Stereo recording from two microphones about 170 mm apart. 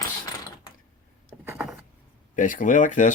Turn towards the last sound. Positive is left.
turn(degrees=50)  # may be behind; listen again after turning